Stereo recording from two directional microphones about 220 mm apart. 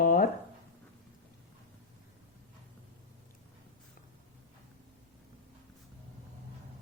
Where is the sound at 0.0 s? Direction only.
40° left (ahead or behind).